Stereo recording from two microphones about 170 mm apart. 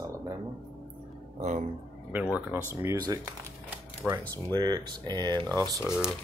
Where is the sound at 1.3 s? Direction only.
40° right (ahead or behind).